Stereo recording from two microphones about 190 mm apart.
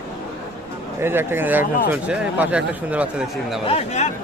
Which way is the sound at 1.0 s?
10° right (ahead or behind).